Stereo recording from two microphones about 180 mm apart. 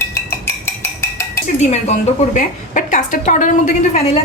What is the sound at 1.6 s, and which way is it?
A woman's voice, 40° left (ahead or behind).